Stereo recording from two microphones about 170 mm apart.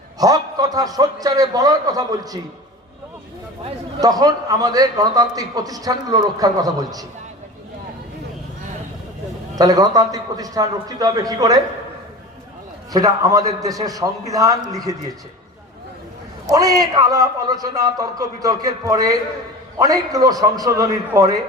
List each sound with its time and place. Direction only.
0.2 s a man's voice: 20° right (ahead or behind)
4.0 s a man's voice: 20° right (ahead or behind)
9.6 s a man's voice: 20° right (ahead or behind)
12.9 s a man's voice: 20° right (ahead or behind)
16.5 s a man's voice: 20° right (ahead or behind)